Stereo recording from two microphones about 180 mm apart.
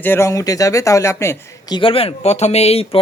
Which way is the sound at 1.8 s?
30° left (ahead or behind).